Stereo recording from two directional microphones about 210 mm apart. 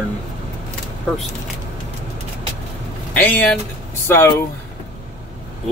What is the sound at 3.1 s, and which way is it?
Speech, 5° left (ahead or behind).